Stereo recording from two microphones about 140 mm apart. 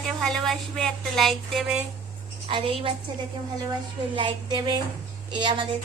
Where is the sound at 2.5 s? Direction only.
40° right (ahead or behind).